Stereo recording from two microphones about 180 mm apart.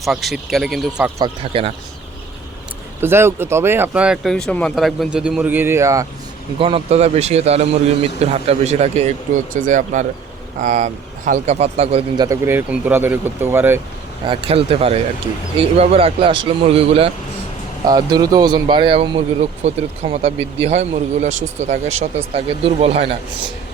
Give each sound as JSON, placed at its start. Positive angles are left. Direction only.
{"t": 0.0, "sound": "speech", "side_deg": 0}
{"t": 1.2, "sound": "a man's voice", "side_deg": -30}
{"t": 3.0, "sound": "speech", "side_deg": -15}
{"t": 6.6, "sound": "a man's voice", "side_deg": -30}
{"t": 12.2, "sound": "speech", "side_deg": -15}
{"t": 14.3, "sound": "a man's voice", "side_deg": -30}
{"t": 17.8, "sound": "a man's voice", "side_deg": -20}